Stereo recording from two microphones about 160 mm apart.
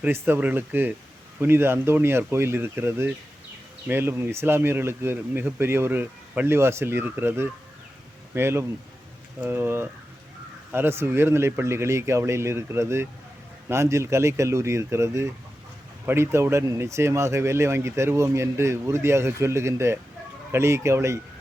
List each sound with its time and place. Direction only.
0.0 s speech: 10° right (ahead or behind)